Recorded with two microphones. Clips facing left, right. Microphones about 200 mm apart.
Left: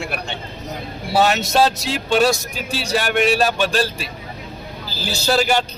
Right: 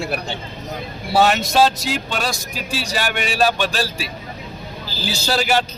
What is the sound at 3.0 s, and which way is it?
Speech, centre (ahead or behind).